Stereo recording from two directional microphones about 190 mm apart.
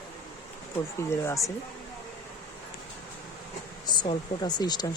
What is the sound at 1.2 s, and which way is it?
Speech, 15° left (ahead or behind).